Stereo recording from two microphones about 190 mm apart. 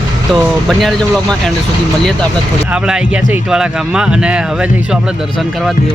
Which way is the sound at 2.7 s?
5° right (ahead or behind).